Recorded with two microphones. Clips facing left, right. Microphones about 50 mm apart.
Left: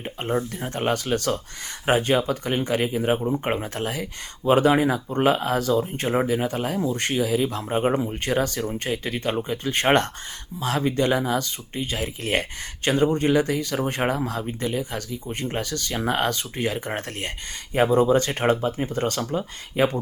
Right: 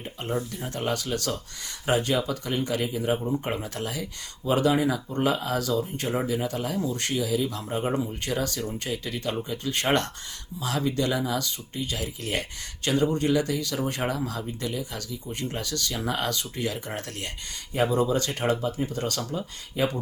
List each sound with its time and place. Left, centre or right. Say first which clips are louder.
0.0 s speech: left 4 dB; left
3.2 s speech: left 4 dB; left
3.5 s speech: left 4 dB; left